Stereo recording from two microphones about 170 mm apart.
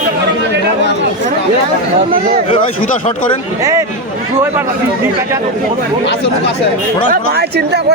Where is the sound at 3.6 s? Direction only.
20° right (ahead or behind).